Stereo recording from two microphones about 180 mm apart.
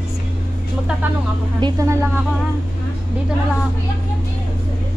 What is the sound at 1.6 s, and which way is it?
Speech, 15° right (ahead or behind).